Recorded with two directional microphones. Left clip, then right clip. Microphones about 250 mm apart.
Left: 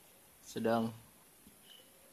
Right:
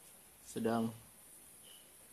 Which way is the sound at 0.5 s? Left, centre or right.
Centre.